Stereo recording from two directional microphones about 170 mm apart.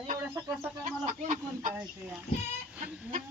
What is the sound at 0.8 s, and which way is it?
Speech, 45° right (ahead or behind).